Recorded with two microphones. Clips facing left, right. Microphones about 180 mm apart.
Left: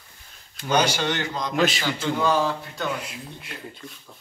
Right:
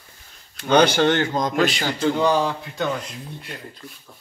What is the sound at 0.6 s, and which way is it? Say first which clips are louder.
Speech: right 6 dB; 60° right (ahead or behind).